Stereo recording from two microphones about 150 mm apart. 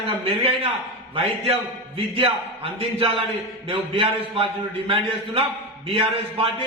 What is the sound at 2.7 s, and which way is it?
A man's voice, 40° right (ahead or behind).